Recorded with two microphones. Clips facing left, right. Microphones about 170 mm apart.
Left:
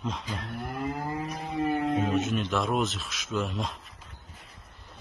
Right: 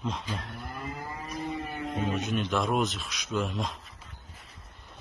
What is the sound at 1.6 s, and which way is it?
Music, 65° left (ahead or behind).